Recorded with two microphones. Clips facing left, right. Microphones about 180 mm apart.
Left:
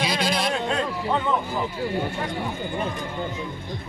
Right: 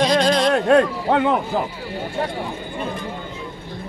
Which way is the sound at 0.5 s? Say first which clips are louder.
Right 10 dB; 60° right (ahead or behind).